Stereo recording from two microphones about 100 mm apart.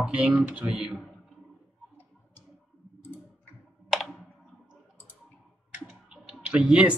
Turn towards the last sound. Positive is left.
turn(degrees=-10)  # may be behind; listen again after turning